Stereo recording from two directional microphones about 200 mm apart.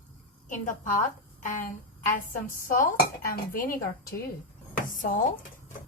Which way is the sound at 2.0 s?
45° left (ahead or behind).